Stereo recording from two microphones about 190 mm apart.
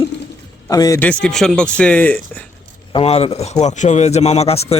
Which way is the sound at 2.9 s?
30° left (ahead or behind).